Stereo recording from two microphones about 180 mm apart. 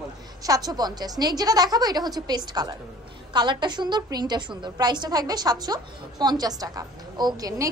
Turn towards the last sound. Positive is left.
turn(degrees=-20)  # may be behind; listen again after turning